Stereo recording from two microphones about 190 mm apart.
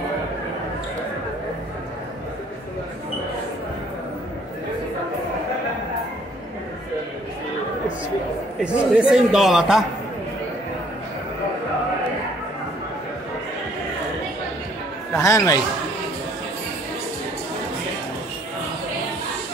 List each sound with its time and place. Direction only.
8.5 s a man's voice: 5° right (ahead or behind)
15.1 s a man's voice: 15° left (ahead or behind)